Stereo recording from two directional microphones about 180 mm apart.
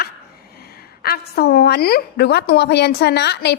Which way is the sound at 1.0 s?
60° left (ahead or behind).